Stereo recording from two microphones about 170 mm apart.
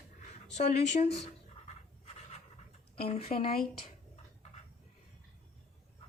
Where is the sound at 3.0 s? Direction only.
35° left (ahead or behind).